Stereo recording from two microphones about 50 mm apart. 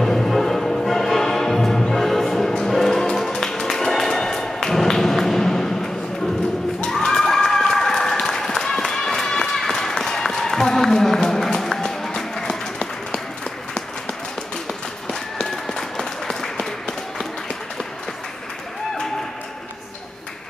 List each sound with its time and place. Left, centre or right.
0.0 s music: centre
6.9 s run: centre
16.3 s applause: centre